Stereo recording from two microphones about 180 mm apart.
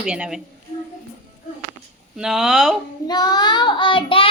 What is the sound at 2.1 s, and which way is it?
Speech, 5° right (ahead or behind).